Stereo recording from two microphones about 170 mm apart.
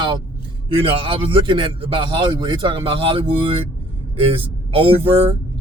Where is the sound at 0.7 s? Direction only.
30° right (ahead or behind).